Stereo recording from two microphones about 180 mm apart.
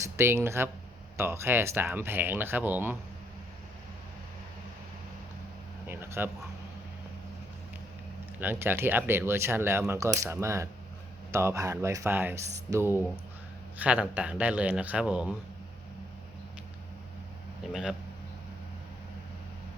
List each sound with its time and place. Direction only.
0.0 s speech: 15° right (ahead or behind)
5.9 s a sound: 10° right (ahead or behind)
8.4 s speech: 10° right (ahead or behind)
17.7 s speech: 5° right (ahead or behind)